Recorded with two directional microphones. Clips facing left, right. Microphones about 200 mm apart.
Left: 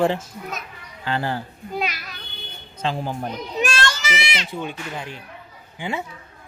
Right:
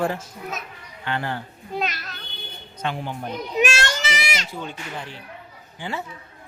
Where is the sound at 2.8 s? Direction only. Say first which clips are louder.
Left 3 dB; 30° left (ahead or behind).